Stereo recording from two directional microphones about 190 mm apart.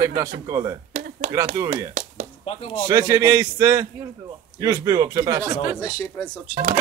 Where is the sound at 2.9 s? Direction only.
15° right (ahead or behind).